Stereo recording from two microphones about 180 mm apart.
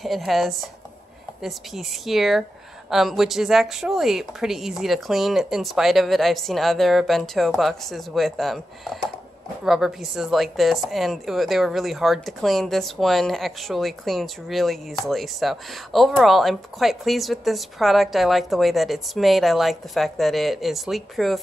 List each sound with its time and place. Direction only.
0.0 s speech: centre (ahead or behind)
9.7 s speech: centre (ahead or behind)